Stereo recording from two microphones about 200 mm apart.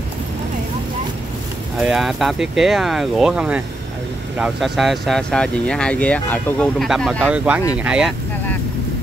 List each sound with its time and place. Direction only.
1.8 s speech: centre (ahead or behind)